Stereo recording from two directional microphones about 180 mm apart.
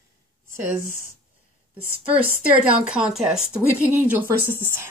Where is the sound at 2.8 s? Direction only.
5° right (ahead or behind).